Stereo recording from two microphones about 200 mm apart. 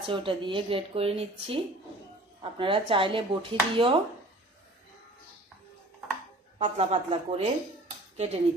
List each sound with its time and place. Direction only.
0.1 s speech: 25° right (ahead or behind)
6.6 s a woman's voice: 30° right (ahead or behind)